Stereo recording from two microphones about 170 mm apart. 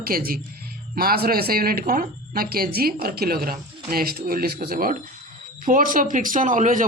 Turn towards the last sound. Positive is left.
turn(degrees=-50)  # may be behind; listen again after turning